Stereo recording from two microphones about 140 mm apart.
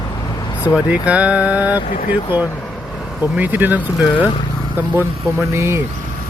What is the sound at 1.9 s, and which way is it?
Speech, 75° left (ahead or behind).